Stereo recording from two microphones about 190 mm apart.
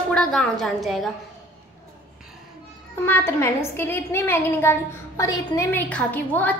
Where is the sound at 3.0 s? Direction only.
10° left (ahead or behind).